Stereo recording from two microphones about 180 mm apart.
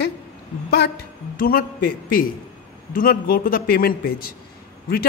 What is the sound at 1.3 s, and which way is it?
A man's voice, 50° left (ahead or behind).